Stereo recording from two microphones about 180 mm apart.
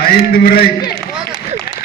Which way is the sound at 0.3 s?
60° left (ahead or behind).